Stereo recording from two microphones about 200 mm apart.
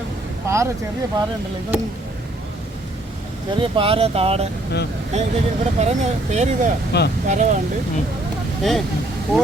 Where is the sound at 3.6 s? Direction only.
25° right (ahead or behind).